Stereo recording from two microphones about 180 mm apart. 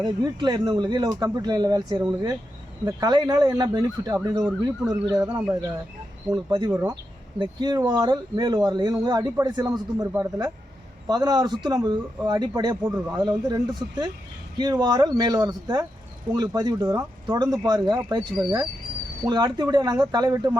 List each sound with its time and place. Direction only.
0.0 s speech: 25° right (ahead or behind)
6.3 s speech: 25° right (ahead or behind)
6.7 s speech: 15° right (ahead or behind)
7.3 s speech: 25° right (ahead or behind)